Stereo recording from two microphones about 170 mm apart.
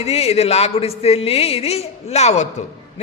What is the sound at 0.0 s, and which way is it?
A man's voice, 40° left (ahead or behind).